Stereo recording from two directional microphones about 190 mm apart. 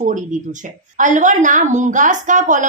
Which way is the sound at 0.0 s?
40° right (ahead or behind).